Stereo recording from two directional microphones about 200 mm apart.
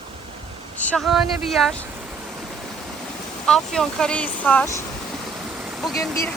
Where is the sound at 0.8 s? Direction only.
5° left (ahead or behind).